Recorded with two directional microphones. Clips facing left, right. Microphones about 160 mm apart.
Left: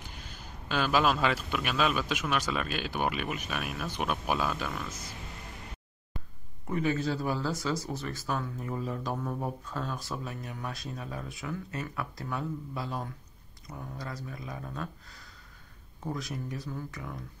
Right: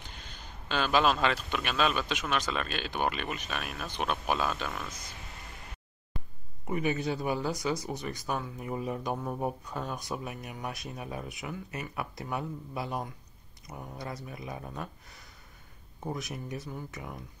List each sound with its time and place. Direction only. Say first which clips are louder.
0.0 s a man's voice: left 2 dB; 10° left (ahead or behind)
6.7 s speech: left 1 dB; 20° right (ahead or behind)
16.1 s speech: left 1 dB; 20° right (ahead or behind)